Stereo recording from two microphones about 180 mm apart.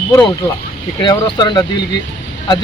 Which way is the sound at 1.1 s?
25° left (ahead or behind).